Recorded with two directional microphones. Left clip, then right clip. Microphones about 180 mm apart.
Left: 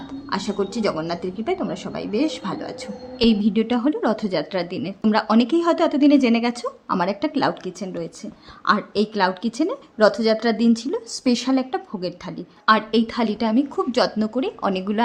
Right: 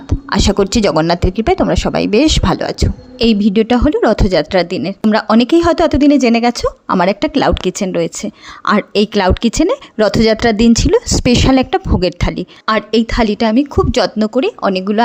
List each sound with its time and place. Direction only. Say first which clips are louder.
0.1 s a woman's voice: right 12 dB; 50° right (ahead or behind)
12.6 s a woman's voice: right 4 dB; 40° right (ahead or behind)